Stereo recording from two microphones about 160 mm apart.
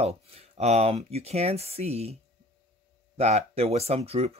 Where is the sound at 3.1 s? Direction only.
40° right (ahead or behind).